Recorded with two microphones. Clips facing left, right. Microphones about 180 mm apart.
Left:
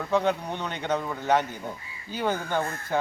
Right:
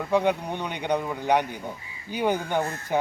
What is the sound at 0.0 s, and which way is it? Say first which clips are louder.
Speech: right 2 dB; 10° right (ahead or behind).